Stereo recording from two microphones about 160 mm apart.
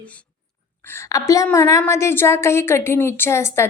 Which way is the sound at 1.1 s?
20° left (ahead or behind).